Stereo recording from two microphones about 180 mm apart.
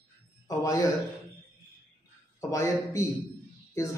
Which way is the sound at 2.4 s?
15° left (ahead or behind).